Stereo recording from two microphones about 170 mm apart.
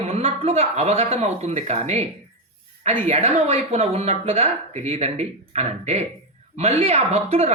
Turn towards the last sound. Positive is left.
turn(degrees=-40)  # may be behind; listen again after turning